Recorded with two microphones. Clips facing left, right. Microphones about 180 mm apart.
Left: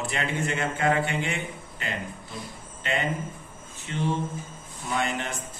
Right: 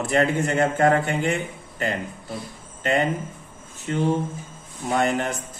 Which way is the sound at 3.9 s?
45° right (ahead or behind).